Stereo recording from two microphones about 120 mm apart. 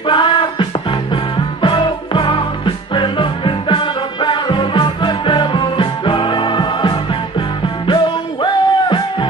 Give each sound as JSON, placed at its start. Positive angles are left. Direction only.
{"t": 0.0, "sound": "music", "side_deg": 45}